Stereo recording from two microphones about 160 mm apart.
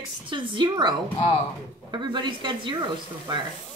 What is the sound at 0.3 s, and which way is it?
A woman's voice, 30° right (ahead or behind).